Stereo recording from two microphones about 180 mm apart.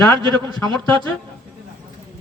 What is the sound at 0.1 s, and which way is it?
Speech, 25° right (ahead or behind).